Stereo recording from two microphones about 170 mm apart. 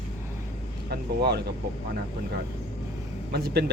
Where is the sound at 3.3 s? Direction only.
70° right (ahead or behind).